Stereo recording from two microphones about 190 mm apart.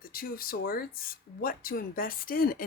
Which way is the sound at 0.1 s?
50° left (ahead or behind).